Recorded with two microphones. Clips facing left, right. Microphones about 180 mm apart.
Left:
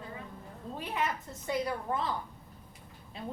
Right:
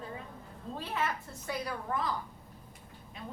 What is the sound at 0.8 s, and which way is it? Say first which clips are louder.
A woman's voice: left 1 dB; 15° left (ahead or behind).